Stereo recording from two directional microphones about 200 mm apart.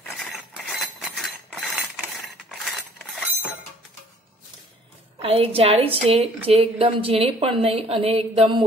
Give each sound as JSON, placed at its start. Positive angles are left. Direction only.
{"t": 0.1, "sound": "chink", "side_deg": 0}
{"t": 5.2, "sound": "a woman's voice", "side_deg": -30}